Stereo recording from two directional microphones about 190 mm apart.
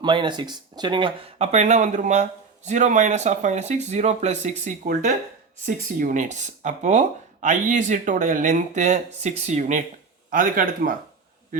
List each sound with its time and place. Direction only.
0.0 s a man's voice: 25° right (ahead or behind); by 10.9 s 45° right (ahead or behind)